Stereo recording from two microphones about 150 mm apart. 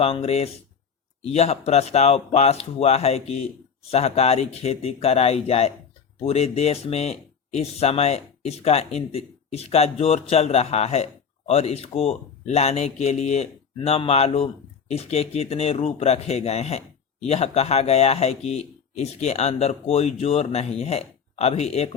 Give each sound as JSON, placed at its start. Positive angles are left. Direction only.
{"t": 0.0, "sound": "speech", "side_deg": 40}